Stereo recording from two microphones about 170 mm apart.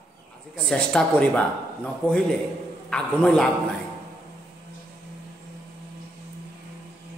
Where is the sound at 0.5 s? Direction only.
5° left (ahead or behind).